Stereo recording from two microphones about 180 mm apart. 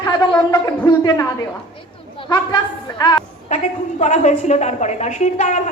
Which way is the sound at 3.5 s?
40° left (ahead or behind).